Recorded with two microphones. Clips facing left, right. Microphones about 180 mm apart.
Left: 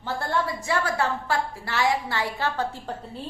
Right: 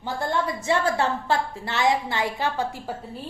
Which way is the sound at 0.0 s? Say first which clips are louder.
Right 1 dB; 15° right (ahead or behind).